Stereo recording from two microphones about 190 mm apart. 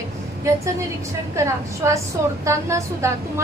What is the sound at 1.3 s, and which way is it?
A woman's voice, 15° right (ahead or behind).